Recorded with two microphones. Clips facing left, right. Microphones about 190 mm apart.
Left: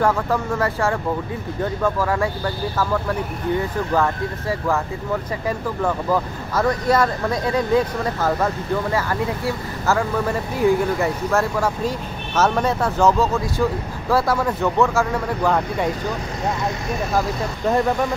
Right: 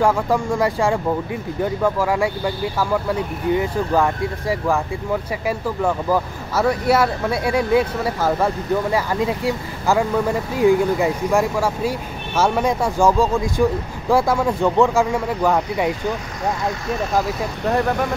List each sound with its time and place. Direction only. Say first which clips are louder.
0.0 s speech: right 2 dB; 10° right (ahead or behind)